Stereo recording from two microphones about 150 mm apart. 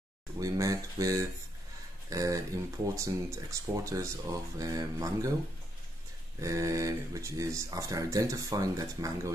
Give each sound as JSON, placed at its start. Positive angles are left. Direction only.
{"t": 0.4, "sound": "speech", "side_deg": -20}
{"t": 6.4, "sound": "speech", "side_deg": -20}